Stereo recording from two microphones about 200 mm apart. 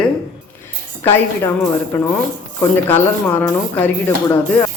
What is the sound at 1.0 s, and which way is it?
Speech, 10° left (ahead or behind).